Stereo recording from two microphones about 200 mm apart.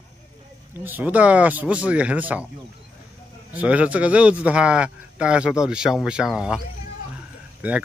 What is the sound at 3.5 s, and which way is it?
A man's voice, 5° right (ahead or behind).